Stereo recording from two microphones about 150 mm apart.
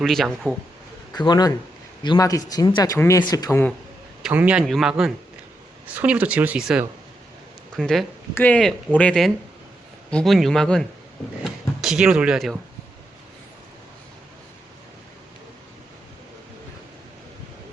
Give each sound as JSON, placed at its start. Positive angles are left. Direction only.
{"t": 0.0, "sound": "a man's voice", "side_deg": 0}
{"t": 1.1, "sound": "speech", "side_deg": 30}
{"t": 4.2, "sound": "a man's voice", "side_deg": -10}
{"t": 11.4, "sound": "a sound", "side_deg": -5}